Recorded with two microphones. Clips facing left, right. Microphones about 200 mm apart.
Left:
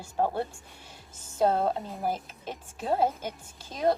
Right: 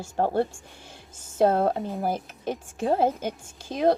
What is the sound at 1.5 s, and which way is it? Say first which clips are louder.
Speech: right 3 dB; 50° right (ahead or behind).